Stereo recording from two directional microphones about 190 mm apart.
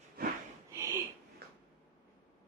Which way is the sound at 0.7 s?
15° right (ahead or behind).